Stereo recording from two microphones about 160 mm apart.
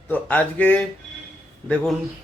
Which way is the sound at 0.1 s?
10° left (ahead or behind).